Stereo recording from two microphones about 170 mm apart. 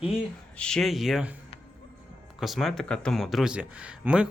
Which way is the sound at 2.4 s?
Centre (ahead or behind).